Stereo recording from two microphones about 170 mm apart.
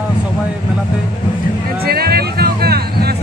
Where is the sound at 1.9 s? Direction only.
65° right (ahead or behind).